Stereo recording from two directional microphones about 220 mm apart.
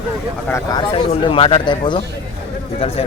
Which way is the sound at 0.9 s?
20° left (ahead or behind).